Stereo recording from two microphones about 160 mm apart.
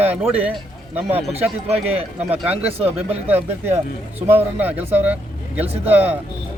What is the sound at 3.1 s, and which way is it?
Speech, 10° right (ahead or behind).